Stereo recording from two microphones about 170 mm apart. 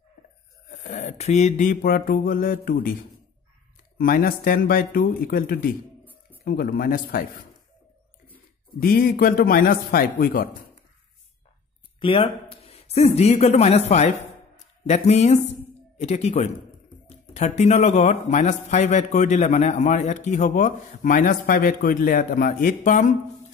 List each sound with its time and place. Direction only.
0.7 s music: 45° left (ahead or behind)
4.0 s music: 60° left (ahead or behind)
8.7 s music: 60° left (ahead or behind)
12.0 s a man's voice: 30° left (ahead or behind); by 23.1 s 50° left (ahead or behind)